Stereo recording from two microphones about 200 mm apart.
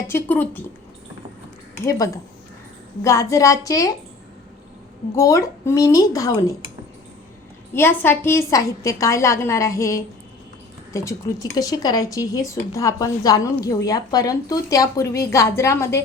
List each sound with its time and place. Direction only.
0.1 s speech: 10° left (ahead or behind)
1.8 s speech: 15° left (ahead or behind)
5.1 s speech: 15° left (ahead or behind)
7.7 s speech: 10° left (ahead or behind)